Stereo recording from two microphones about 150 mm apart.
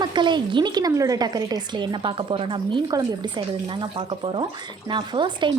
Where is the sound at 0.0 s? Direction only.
30° right (ahead or behind).